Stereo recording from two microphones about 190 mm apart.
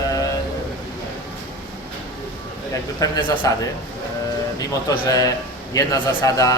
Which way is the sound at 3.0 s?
25° left (ahead or behind).